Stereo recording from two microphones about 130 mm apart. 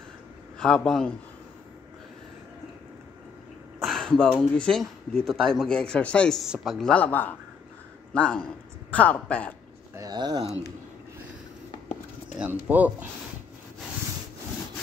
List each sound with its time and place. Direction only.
0.6 s speech: 5° left (ahead or behind)
3.8 s a sound: 5° left (ahead or behind)
4.4 s speech: 5° left (ahead or behind)
9.9 s speech: 30° right (ahead or behind)
12.4 s speech: 10° right (ahead or behind)